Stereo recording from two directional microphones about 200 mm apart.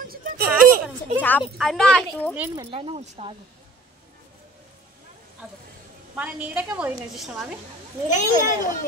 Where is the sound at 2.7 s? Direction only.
30° right (ahead or behind).